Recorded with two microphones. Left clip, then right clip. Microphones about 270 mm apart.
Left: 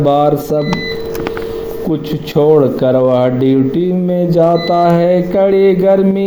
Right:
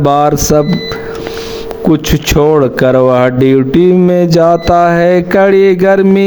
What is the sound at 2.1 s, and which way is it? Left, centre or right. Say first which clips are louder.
Speech: left 1 dB; right.